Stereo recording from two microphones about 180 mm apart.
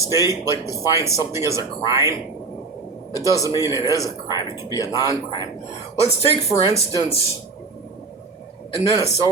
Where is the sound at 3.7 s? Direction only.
20° left (ahead or behind).